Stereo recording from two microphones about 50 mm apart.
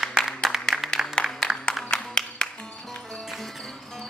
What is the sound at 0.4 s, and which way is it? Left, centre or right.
Music, centre.